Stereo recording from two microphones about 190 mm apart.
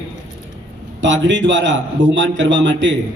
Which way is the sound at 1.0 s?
75° right (ahead or behind).